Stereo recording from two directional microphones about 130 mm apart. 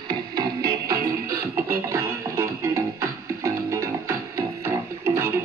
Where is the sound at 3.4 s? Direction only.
25° right (ahead or behind).